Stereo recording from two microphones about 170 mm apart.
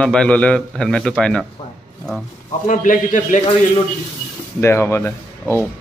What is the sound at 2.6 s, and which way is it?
Speech, 45° left (ahead or behind).